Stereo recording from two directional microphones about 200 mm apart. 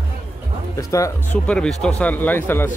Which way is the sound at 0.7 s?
15° left (ahead or behind).